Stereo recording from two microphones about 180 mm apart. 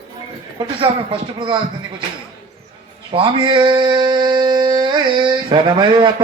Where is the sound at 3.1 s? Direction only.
30° right (ahead or behind).